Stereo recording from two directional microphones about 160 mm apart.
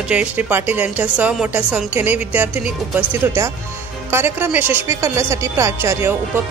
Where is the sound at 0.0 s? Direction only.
10° right (ahead or behind).